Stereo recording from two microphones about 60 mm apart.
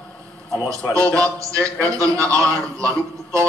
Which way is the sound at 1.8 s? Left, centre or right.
Right.